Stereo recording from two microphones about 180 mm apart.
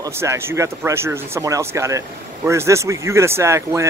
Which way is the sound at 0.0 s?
15° right (ahead or behind).